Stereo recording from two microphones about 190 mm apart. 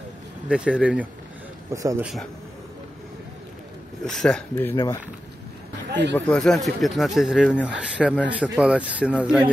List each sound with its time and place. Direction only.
0.5 s speech: 5° right (ahead or behind)
1.7 s speech: 15° right (ahead or behind)
4.0 s speech: 5° left (ahead or behind)
5.9 s speech: 65° right (ahead or behind)
6.1 s speech: 5° left (ahead or behind)